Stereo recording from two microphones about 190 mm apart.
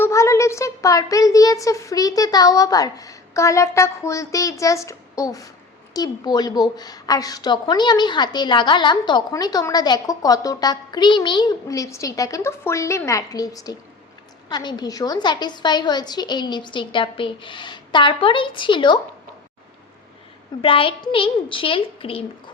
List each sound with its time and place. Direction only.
0.0 s a sound: 15° left (ahead or behind)
5.9 s a woman's voice: 20° left (ahead or behind)
20.6 s a woman's voice: 30° left (ahead or behind)